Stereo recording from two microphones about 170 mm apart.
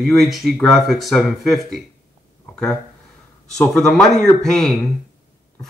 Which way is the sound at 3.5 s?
Centre (ahead or behind).